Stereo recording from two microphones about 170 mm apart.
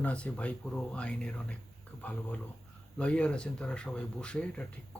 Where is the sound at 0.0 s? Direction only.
5° left (ahead or behind).